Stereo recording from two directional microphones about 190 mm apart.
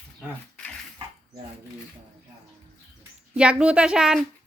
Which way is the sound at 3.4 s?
5° right (ahead or behind).